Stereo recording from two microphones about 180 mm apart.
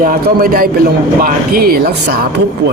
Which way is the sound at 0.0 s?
50° right (ahead or behind).